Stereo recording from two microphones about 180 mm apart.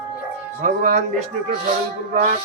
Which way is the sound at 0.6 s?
40° right (ahead or behind).